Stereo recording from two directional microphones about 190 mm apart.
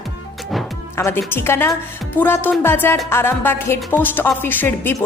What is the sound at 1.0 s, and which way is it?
A woman's voice, 15° left (ahead or behind).